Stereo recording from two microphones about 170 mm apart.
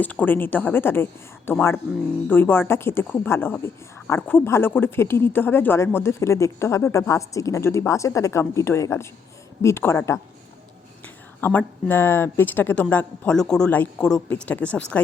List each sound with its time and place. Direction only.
0.0 s speech: 10° left (ahead or behind)
11.3 s speech: 10° left (ahead or behind)